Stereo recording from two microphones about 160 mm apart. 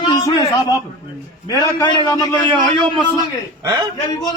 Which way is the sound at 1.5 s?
25° left (ahead or behind).